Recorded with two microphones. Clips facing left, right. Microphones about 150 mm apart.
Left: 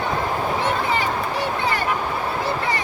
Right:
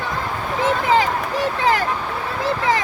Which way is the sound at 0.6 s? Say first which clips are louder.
Right 4 dB; 90° right.